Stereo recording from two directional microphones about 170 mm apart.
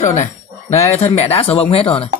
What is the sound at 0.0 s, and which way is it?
Speech, 40° left (ahead or behind).